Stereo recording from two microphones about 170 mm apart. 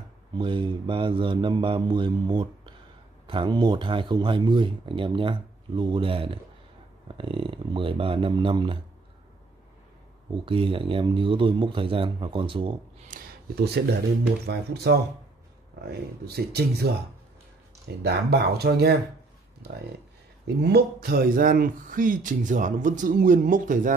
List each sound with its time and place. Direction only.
0.4 s a man's voice: 30° right (ahead or behind)
10.4 s a man's voice: 30° right (ahead or behind)
13.1 s a sound: 50° right (ahead or behind)
13.6 s speech: 70° right (ahead or behind)
18.0 s speech: 70° right (ahead or behind)
20.4 s speech: 70° right (ahead or behind); by 23.9 s 50° right (ahead or behind)